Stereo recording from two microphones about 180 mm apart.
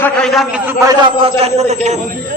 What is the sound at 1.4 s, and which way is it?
Speech, 40° right (ahead or behind).